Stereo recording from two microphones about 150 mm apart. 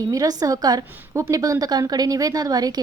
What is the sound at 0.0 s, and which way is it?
A woman's voice, 25° right (ahead or behind).